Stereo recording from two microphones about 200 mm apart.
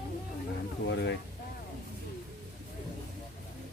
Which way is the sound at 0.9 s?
60° left (ahead or behind).